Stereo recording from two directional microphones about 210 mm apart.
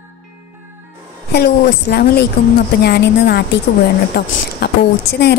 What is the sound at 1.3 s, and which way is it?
A woman's voice, 50° left (ahead or behind).